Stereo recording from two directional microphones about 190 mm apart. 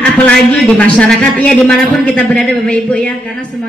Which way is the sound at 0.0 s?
5° left (ahead or behind).